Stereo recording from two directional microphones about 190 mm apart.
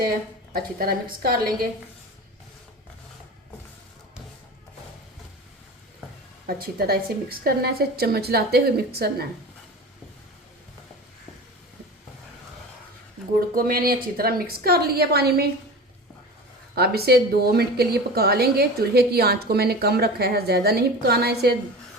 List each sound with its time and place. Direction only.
0.5 s a woman's voice: 50° right (ahead or behind)
6.5 s a woman's voice: 55° right (ahead or behind)
13.5 s a woman's voice: 50° right (ahead or behind)
16.7 s a woman's voice: 55° right (ahead or behind)